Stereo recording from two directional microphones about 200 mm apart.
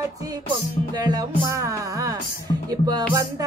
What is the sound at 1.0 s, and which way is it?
Speech, 20° right (ahead or behind).